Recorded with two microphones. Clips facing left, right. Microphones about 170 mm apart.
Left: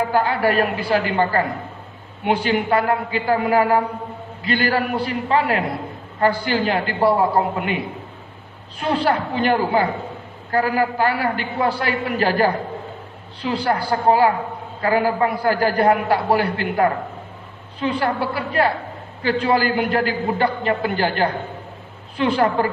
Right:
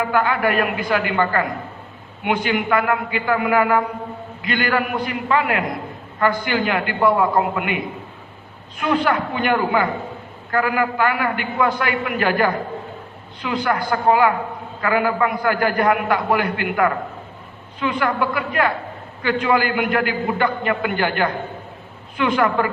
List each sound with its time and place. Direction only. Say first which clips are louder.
0.1 s a man's voice: left 1 dB; 35° left (ahead or behind)
8.8 s a man's voice: even; 35° left (ahead or behind)